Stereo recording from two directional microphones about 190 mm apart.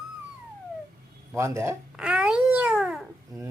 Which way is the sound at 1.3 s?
15° right (ahead or behind).